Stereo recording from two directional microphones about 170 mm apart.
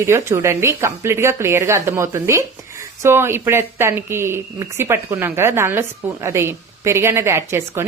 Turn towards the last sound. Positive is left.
turn(degrees=-15)  # may be behind; listen again after turning